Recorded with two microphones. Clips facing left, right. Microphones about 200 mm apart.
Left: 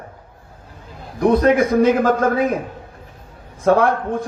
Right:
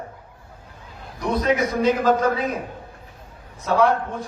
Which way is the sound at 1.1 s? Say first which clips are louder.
Left 7 dB; 50° left (ahead or behind).